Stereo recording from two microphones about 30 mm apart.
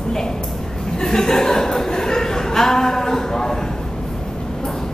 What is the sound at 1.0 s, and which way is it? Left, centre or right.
Speech, centre.